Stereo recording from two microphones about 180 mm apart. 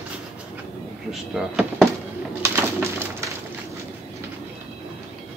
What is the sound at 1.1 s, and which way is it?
Speech, centre (ahead or behind).